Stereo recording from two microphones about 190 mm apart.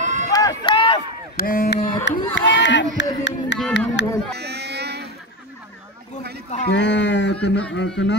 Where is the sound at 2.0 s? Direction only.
70° left (ahead or behind).